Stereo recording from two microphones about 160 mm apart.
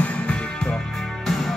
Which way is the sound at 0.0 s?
5° left (ahead or behind).